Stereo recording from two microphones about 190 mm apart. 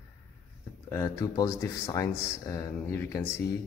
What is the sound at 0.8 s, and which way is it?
Speech, 15° left (ahead or behind).